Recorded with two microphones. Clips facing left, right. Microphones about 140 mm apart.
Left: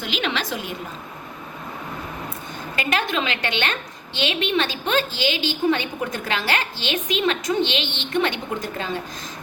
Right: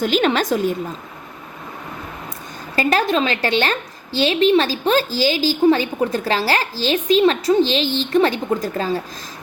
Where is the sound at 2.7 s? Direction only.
35° right (ahead or behind).